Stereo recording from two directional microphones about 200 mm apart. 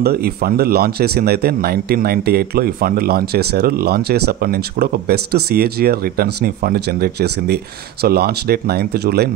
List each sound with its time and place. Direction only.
0.0 s speech: 50° right (ahead or behind)